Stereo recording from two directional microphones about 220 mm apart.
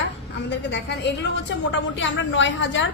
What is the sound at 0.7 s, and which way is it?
A woman's voice, 55° left (ahead or behind).